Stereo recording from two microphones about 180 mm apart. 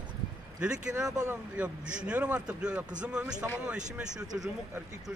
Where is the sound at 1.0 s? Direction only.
20° right (ahead or behind).